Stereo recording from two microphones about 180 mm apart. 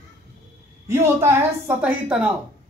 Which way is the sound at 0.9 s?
15° right (ahead or behind).